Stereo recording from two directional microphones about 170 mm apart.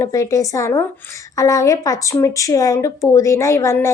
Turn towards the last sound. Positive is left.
turn(degrees=15)  # may be behind; listen again after turning